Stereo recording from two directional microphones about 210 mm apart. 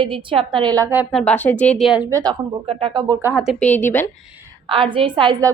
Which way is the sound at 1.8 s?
5° right (ahead or behind).